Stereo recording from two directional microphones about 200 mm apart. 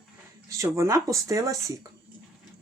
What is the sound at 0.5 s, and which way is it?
Speech, 15° right (ahead or behind).